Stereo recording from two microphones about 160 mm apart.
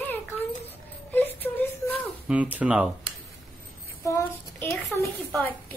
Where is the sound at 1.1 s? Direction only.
10° left (ahead or behind).